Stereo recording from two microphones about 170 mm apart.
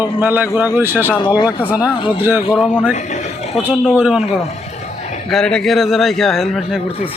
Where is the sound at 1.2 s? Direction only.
25° left (ahead or behind).